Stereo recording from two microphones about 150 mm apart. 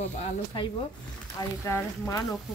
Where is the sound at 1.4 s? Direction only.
20° left (ahead or behind).